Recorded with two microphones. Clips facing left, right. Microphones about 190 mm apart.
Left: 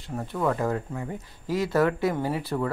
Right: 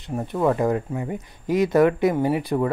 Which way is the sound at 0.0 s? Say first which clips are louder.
Right 5 dB; 20° right (ahead or behind).